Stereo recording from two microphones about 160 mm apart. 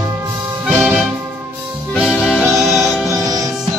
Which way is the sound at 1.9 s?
5° right (ahead or behind).